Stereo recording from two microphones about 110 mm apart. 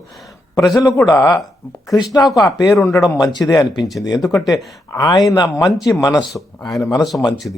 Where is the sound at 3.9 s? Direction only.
35° left (ahead or behind).